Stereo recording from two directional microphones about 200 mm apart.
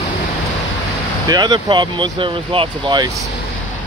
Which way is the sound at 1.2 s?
20° right (ahead or behind).